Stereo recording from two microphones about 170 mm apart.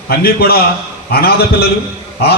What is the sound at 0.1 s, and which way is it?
A man's voice, 60° left (ahead or behind).